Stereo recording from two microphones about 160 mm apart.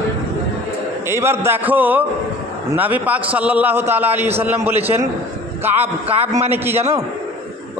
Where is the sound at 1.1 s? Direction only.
15° right (ahead or behind).